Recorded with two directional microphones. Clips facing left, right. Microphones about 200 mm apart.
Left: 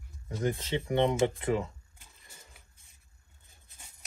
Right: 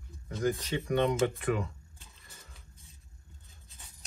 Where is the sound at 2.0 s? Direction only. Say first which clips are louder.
Right 1 dB; 10° left (ahead or behind).